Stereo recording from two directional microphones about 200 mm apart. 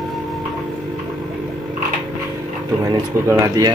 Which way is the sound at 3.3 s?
20° right (ahead or behind).